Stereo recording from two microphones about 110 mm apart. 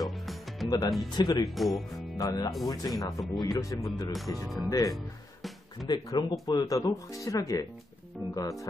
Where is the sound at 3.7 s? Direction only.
30° left (ahead or behind).